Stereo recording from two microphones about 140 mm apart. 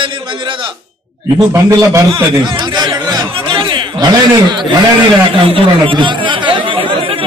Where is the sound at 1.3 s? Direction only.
20° right (ahead or behind).